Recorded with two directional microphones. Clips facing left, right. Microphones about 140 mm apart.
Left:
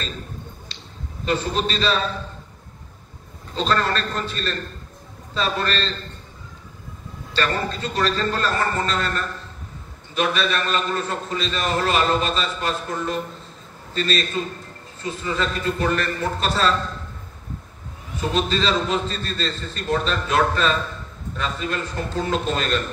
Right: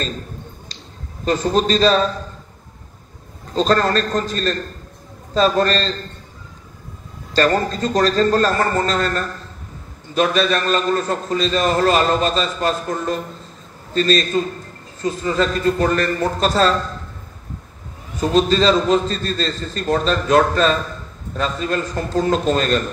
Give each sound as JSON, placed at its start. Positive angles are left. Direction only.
{"t": 1.2, "sound": "a man's voice", "side_deg": -40}
{"t": 3.5, "sound": "a man's voice", "side_deg": -40}
{"t": 7.3, "sound": "a man's voice", "side_deg": -40}
{"t": 18.1, "sound": "a man's voice", "side_deg": -40}